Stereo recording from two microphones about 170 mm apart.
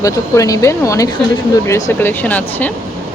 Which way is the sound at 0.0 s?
20° left (ahead or behind).